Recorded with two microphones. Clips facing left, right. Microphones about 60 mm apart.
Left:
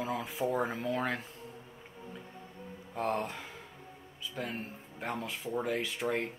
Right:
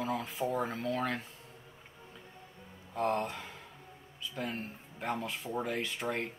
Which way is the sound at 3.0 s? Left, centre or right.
Centre.